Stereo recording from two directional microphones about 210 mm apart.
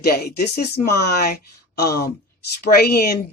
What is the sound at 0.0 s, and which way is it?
Speech, 45° left (ahead or behind).